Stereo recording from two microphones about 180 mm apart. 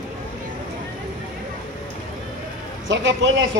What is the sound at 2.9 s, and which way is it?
Speech, 90° right.